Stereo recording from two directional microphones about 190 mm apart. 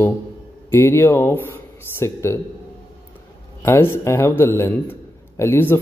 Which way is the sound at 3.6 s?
15° left (ahead or behind).